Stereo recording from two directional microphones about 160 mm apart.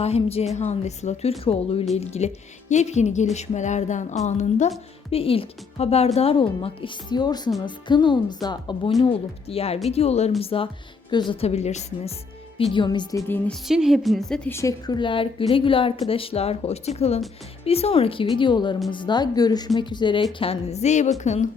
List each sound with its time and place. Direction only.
0.0 s a woman's voice: 40° left (ahead or behind)
5.1 s a woman's voice: 35° left (ahead or behind)
9.0 s a woman's voice: 40° left (ahead or behind)
12.5 s speech: 30° left (ahead or behind); by 13.6 s 15° left (ahead or behind)
13.7 s a woman's voice: centre (ahead or behind)
14.5 s a woman's voice: 20° left (ahead or behind)
20.4 s speech: 40° left (ahead or behind)